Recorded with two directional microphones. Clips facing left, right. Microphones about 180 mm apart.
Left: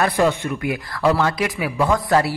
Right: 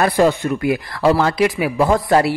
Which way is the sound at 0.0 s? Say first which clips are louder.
Right 3 dB; 35° right (ahead or behind).